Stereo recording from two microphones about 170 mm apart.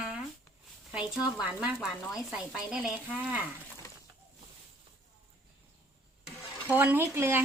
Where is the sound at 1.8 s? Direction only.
Centre (ahead or behind).